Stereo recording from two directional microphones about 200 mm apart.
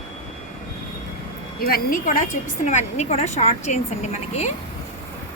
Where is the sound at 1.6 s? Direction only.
45° left (ahead or behind).